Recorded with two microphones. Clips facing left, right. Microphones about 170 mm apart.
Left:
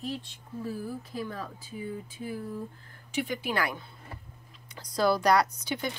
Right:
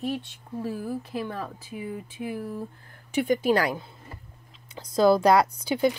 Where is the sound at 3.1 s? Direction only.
50° right (ahead or behind).